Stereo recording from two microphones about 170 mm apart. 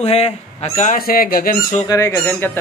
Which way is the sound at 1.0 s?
60° left (ahead or behind).